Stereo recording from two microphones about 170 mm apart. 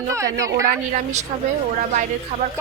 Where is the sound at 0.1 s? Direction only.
20° right (ahead or behind).